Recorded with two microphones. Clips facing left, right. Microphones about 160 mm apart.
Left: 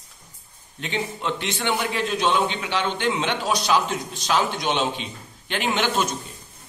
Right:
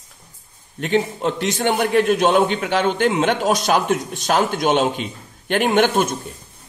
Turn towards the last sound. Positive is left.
turn(degrees=-50)  # may be behind; listen again after turning